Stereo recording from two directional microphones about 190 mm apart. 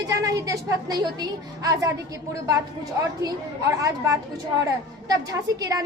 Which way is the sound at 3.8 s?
15° right (ahead or behind).